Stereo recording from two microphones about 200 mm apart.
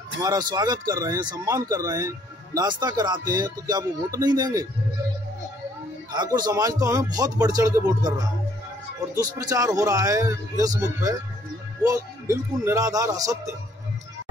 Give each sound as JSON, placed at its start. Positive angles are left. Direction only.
{"t": 0.2, "sound": "speech", "side_deg": -20}
{"t": 6.1, "sound": "speech", "side_deg": -20}
{"t": 9.1, "sound": "a man's voice", "side_deg": -20}